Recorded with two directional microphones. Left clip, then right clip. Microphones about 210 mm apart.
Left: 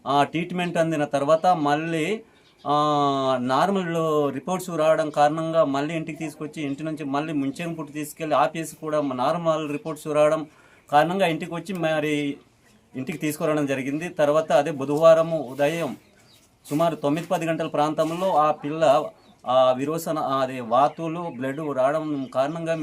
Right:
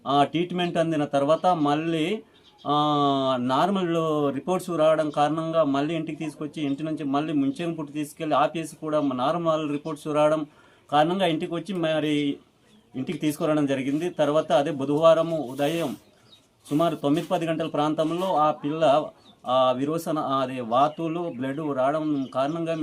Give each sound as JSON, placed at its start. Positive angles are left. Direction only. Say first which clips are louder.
{"t": 0.0, "sound": "speech", "louder": "even", "side_deg": 15}